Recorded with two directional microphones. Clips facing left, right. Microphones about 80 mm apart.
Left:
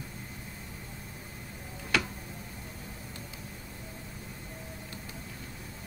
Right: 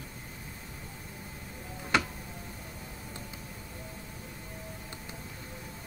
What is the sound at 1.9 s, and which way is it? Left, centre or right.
Tick-tock, right.